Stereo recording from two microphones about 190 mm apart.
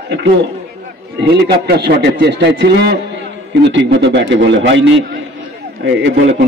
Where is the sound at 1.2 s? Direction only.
55° right (ahead or behind); by 4.9 s 75° right (ahead or behind).